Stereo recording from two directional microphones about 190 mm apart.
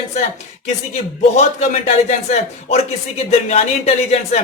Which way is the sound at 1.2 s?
35° left (ahead or behind).